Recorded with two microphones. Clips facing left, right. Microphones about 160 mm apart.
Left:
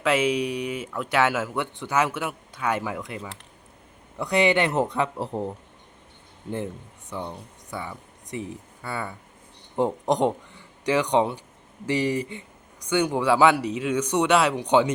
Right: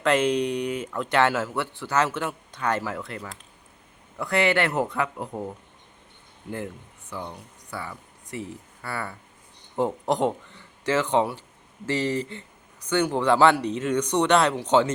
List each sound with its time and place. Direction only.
0.0 s speech: 5° left (ahead or behind); by 5.5 s 25° left (ahead or behind)
7.3 s speech: 20° left (ahead or behind)
9.7 s speech: 20° left (ahead or behind)